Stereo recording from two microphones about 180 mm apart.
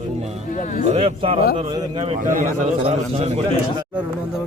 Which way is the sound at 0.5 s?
45° left (ahead or behind).